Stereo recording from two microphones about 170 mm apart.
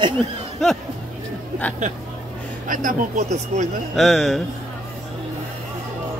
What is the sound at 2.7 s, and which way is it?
Speech, 50° right (ahead or behind).